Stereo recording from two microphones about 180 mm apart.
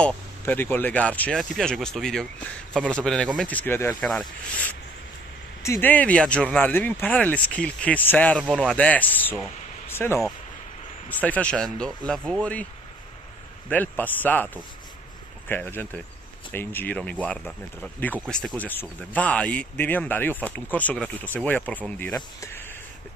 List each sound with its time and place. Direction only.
0.0 s speech: 10° left (ahead or behind)
13.7 s speech: 10° left (ahead or behind)